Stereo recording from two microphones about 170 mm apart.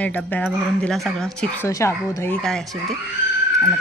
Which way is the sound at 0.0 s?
10° left (ahead or behind).